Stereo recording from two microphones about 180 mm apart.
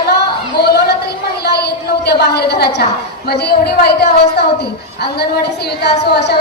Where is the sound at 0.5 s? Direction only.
65° left (ahead or behind).